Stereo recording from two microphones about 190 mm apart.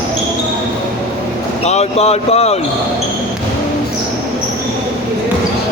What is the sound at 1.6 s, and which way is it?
Speech, 35° left (ahead or behind).